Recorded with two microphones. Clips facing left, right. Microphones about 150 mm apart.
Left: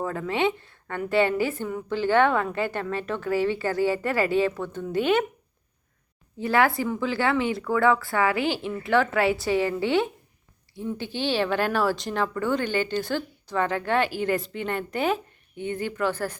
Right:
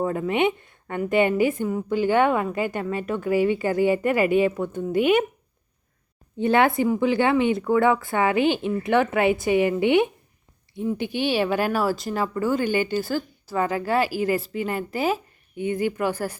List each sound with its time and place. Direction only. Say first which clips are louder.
0.0 s speech: right 3 dB; 20° right (ahead or behind)
6.4 s speech: right 3 dB; 20° right (ahead or behind)